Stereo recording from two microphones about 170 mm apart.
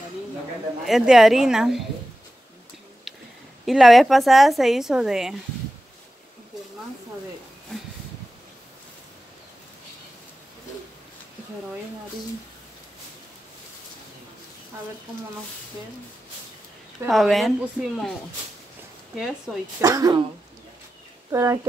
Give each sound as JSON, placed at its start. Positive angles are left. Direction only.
{"t": 0.8, "sound": "a woman's voice", "side_deg": 0}
{"t": 3.1, "sound": "a sound", "side_deg": 0}
{"t": 3.6, "sound": "a woman's voice", "side_deg": 0}
{"t": 17.1, "sound": "a woman's voice", "side_deg": 0}
{"t": 19.1, "sound": "a woman's voice", "side_deg": -5}
{"t": 19.8, "sound": "speech", "side_deg": -20}
{"t": 21.3, "sound": "speech", "side_deg": -20}